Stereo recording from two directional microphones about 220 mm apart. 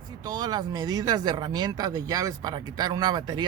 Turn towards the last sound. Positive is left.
turn(degrees=-20)  # may be behind; listen again after turning